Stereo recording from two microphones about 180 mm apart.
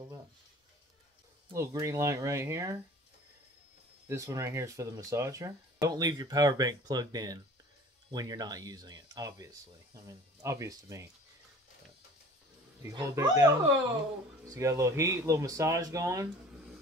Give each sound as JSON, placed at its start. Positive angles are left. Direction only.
{"t": 1.5, "sound": "speech", "side_deg": -20}
{"t": 4.1, "sound": "speech", "side_deg": -20}
{"t": 12.8, "sound": "speech", "side_deg": -15}